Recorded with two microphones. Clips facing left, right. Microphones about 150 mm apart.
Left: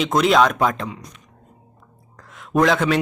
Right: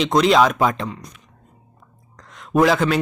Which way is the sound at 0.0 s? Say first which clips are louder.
Right 1 dB; 5° left (ahead or behind).